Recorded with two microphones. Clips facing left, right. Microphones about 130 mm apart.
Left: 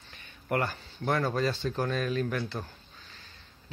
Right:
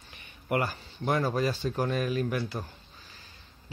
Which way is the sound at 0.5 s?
10° right (ahead or behind).